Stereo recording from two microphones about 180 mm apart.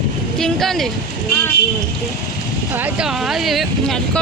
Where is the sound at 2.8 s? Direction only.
5° right (ahead or behind).